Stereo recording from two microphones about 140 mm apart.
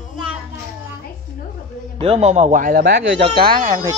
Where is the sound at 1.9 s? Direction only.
45° right (ahead or behind); by 2.9 s 80° right.